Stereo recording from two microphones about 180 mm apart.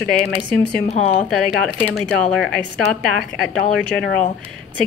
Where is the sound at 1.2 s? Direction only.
5° left (ahead or behind).